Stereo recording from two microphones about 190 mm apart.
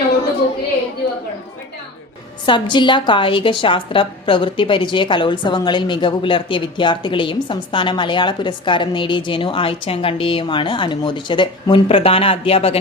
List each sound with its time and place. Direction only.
2.5 s a woman's voice: 25° left (ahead or behind)